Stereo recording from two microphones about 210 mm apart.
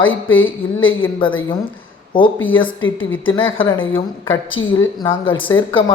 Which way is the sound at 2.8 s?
70° left (ahead or behind).